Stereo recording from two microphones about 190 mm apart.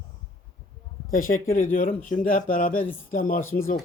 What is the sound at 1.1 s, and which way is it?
Speech, 45° left (ahead or behind).